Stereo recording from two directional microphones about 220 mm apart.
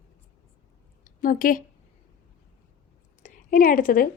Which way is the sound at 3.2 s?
35° left (ahead or behind).